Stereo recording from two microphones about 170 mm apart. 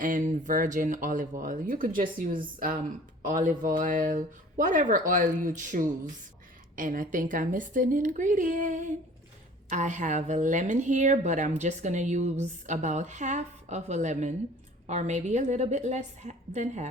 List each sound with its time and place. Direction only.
0.0 s a woman's voice: 50° right (ahead or behind)